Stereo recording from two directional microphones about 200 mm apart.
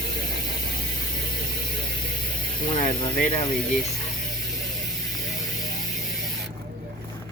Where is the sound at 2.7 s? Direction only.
40° left (ahead or behind).